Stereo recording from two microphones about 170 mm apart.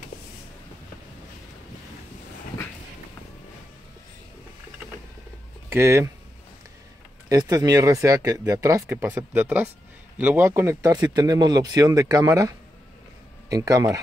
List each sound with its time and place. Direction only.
5.7 s speech: 15° right (ahead or behind)
7.2 s speech: 20° right (ahead or behind)